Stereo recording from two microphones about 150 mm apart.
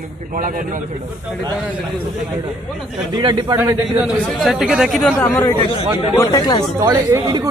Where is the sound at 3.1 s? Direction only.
30° right (ahead or behind).